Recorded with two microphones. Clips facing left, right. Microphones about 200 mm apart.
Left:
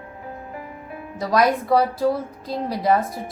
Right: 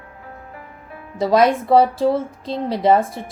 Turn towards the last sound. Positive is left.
turn(degrees=-25)  # may be behind; listen again after turning